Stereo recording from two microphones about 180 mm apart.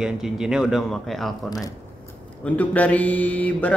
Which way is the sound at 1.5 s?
20° left (ahead or behind).